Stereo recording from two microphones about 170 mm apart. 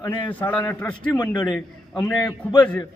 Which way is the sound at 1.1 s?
25° left (ahead or behind).